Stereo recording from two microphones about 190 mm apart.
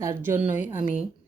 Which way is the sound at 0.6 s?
45° left (ahead or behind).